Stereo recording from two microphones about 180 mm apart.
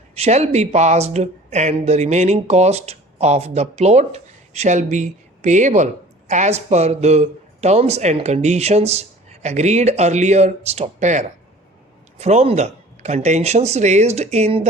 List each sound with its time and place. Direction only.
0.2 s speech: 40° right (ahead or behind)